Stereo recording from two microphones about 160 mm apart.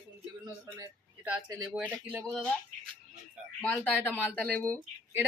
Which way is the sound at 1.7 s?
10° right (ahead or behind).